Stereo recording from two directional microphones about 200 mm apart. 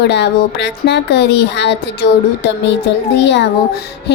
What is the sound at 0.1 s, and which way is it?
Music, 60° left (ahead or behind).